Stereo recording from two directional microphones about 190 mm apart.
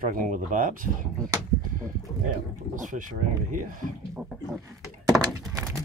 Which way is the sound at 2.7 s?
40° right (ahead or behind).